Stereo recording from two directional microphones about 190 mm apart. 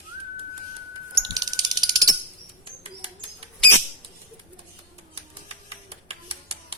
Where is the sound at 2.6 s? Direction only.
30° right (ahead or behind).